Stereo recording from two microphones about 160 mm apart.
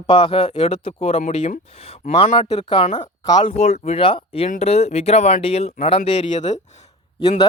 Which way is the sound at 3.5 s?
45° left (ahead or behind).